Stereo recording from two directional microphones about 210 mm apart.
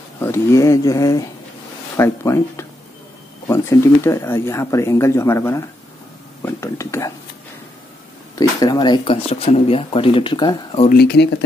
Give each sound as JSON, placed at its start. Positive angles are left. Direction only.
{"t": 0.2, "sound": "speech", "side_deg": 15}
{"t": 8.4, "sound": "speech", "side_deg": 20}
{"t": 10.9, "sound": "speech", "side_deg": 50}